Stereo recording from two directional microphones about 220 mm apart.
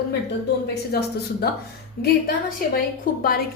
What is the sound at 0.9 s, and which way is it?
Speech, 45° left (ahead or behind).